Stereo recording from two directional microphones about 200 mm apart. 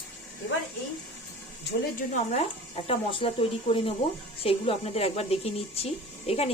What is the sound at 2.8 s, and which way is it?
Speech, 25° left (ahead or behind).